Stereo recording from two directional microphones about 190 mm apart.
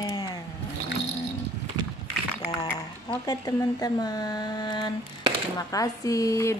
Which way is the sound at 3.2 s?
20° left (ahead or behind).